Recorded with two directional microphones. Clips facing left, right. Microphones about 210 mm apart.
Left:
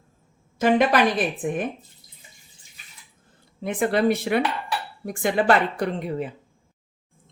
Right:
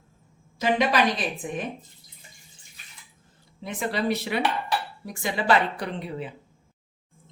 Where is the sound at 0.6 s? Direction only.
55° left (ahead or behind).